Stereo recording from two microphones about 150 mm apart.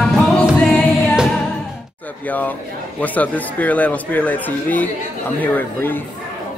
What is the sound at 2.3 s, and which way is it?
A man's voice, 10° left (ahead or behind).